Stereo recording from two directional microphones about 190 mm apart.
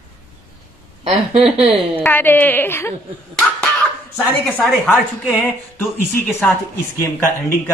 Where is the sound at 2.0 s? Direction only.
10° left (ahead or behind).